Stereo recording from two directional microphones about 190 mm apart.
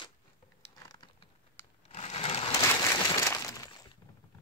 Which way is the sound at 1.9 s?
35° left (ahead or behind).